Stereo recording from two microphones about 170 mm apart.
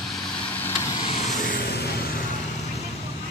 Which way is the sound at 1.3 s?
60° left (ahead or behind).